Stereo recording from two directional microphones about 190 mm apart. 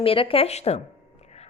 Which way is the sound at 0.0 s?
30° left (ahead or behind).